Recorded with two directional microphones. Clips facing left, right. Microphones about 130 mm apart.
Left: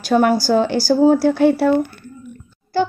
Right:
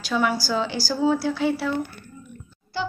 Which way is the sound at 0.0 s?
50° left (ahead or behind).